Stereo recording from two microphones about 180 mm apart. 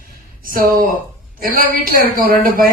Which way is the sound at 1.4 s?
55° right (ahead or behind).